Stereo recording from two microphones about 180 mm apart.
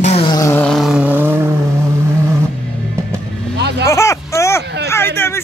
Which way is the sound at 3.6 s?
70° right (ahead or behind).